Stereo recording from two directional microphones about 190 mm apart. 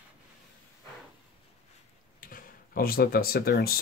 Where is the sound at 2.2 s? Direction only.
45° left (ahead or behind).